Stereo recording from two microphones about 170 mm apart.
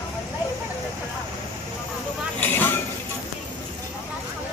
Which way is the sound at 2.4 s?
10° left (ahead or behind).